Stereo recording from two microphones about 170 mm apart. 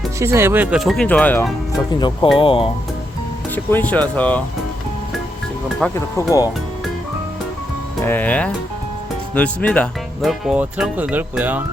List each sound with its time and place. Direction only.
0.2 s speech: 15° right (ahead or behind); by 1.5 s 10° left (ahead or behind)
1.9 s speech: 25° left (ahead or behind)
3.5 s speech: 10° left (ahead or behind)
5.8 s speech: 5° left (ahead or behind)
6.1 s speech: 20° left (ahead or behind)
8.0 s speech: 10° left (ahead or behind); by 11.6 s 10° right (ahead or behind)